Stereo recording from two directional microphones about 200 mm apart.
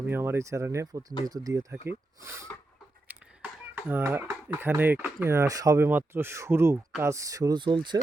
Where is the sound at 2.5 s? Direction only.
10° left (ahead or behind).